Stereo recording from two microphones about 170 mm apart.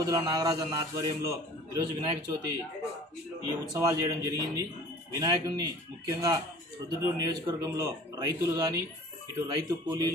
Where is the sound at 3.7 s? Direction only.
20° right (ahead or behind).